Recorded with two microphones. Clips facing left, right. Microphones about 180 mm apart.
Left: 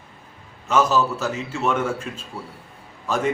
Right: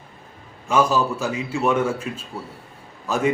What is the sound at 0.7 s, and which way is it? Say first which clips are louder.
A man's voice: even; 10° right (ahead or behind).